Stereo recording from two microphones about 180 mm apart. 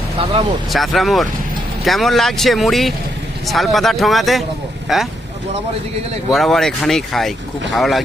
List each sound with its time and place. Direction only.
0.7 s speech: centre (ahead or behind)
6.3 s speech: centre (ahead or behind)